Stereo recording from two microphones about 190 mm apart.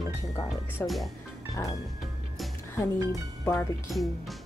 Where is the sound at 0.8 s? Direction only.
10° left (ahead or behind).